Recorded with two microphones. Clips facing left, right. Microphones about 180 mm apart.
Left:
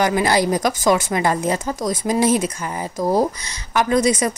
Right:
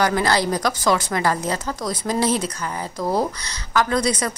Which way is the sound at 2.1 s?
15° left (ahead or behind).